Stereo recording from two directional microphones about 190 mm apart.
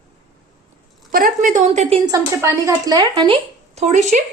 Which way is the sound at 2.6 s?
20° right (ahead or behind).